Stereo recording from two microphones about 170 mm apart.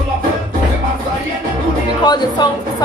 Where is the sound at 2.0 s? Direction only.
25° left (ahead or behind).